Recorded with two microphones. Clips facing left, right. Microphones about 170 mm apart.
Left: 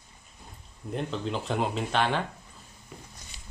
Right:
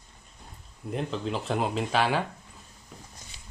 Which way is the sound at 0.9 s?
Centre (ahead or behind).